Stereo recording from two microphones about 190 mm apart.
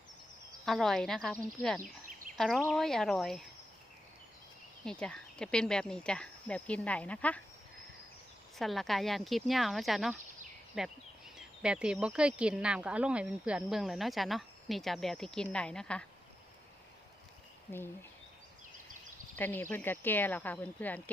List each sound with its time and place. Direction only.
0.6 s speech: centre (ahead or behind)
1.8 s a sound: 45° right (ahead or behind)
2.4 s speech: 5° left (ahead or behind)
4.9 s speech: 5° left (ahead or behind)
8.5 s speech: centre (ahead or behind)
19.4 s speech: 10° left (ahead or behind)